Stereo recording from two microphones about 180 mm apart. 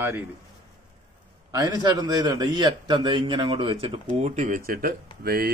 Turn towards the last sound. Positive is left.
turn(degrees=-60)  # may be behind; listen again after turning